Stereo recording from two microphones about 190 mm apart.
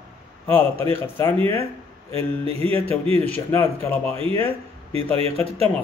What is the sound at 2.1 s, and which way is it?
Speech, 30° right (ahead or behind).